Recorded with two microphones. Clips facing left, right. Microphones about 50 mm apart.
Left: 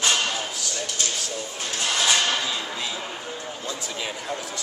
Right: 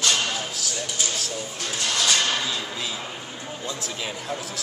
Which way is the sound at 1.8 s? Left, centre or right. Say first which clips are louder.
Left 1 dB; centre.